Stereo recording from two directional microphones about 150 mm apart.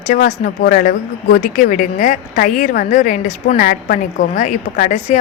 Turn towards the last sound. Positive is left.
turn(degrees=60)  # may be behind; listen again after turning